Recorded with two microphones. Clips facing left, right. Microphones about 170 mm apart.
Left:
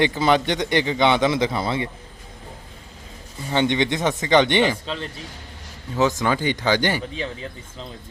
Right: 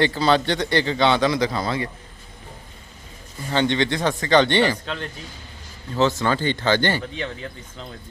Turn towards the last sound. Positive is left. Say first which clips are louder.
# even
turn(degrees=15)  # may be behind; listen again after turning